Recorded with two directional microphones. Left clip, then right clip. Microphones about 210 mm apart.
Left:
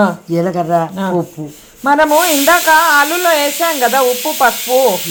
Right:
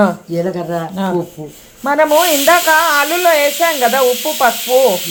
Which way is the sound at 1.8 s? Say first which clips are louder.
Left 1 dB; 5° left (ahead or behind).